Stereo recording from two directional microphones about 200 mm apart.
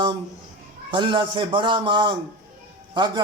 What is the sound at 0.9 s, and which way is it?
A man's voice, 25° right (ahead or behind).